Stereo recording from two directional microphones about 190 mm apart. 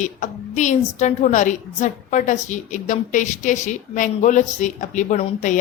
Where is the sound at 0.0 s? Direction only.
40° left (ahead or behind).